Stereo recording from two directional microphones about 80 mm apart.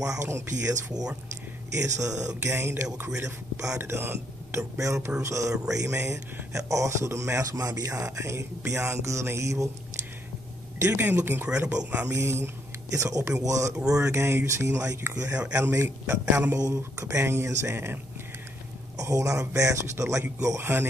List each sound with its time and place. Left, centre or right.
0.0 s speech: right
2.4 s speech: right
10.8 s speech: right
11.4 s speech: centre
12.1 s speech: right
13.7 s speech: centre
14.1 s speech: right
15.1 s speech: centre
16.5 s speech: right
18.9 s speech: right